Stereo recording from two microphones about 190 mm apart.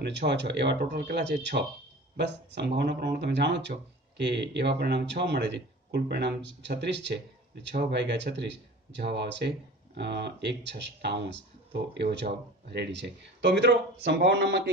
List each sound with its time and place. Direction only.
0.0 s speech: 65° right (ahead or behind)